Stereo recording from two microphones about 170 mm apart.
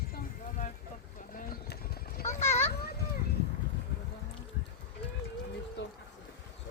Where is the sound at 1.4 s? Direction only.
60° left (ahead or behind).